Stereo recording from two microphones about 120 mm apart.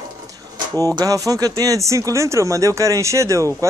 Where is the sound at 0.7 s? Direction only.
35° right (ahead or behind).